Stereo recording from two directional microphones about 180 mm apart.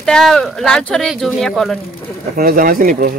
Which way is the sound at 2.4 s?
50° right (ahead or behind).